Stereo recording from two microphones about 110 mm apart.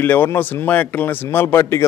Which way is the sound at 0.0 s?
15° left (ahead or behind).